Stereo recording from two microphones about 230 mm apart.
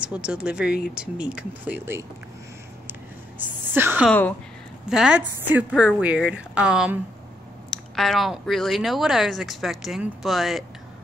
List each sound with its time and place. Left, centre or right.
0.0 s speech: centre
2.9 s a sound: centre
4.1 s speech: centre